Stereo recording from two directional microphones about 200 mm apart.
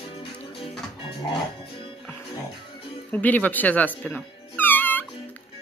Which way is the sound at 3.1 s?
10° left (ahead or behind).